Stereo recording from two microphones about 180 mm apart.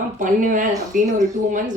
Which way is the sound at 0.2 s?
45° right (ahead or behind).